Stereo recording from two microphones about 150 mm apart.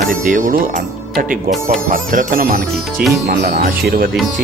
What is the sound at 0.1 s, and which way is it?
Speech, 60° right (ahead or behind).